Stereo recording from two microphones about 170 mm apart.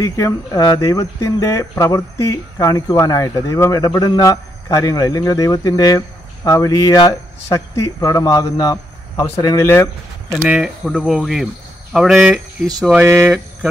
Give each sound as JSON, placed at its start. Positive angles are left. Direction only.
{"t": 0.0, "sound": "speech", "side_deg": 20}
{"t": 10.4, "sound": "speech", "side_deg": -5}